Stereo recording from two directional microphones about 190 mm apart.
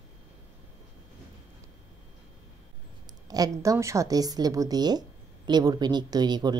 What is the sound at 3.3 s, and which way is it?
A woman's voice, 20° right (ahead or behind).